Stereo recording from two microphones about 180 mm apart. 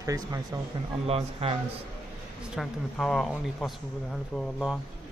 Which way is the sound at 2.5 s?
Centre (ahead or behind).